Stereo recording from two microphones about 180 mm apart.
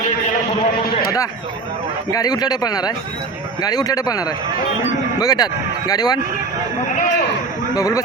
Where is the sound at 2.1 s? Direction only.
20° left (ahead or behind).